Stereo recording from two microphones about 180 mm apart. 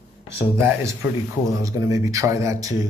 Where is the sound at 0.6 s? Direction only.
15° right (ahead or behind).